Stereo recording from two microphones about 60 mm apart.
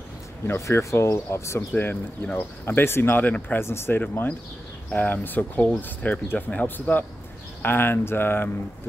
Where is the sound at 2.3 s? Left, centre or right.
Left.